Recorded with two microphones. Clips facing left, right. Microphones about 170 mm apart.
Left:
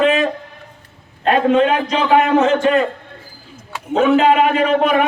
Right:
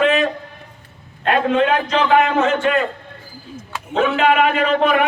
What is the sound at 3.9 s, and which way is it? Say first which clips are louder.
Speech: left 3 dB; 35° left (ahead or behind).